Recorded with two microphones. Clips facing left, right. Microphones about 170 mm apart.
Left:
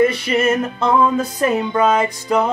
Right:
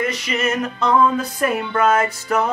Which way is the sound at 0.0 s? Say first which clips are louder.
Left 7 dB; 30° left (ahead or behind).